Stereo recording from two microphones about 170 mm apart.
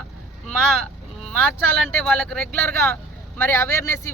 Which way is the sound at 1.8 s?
5° left (ahead or behind).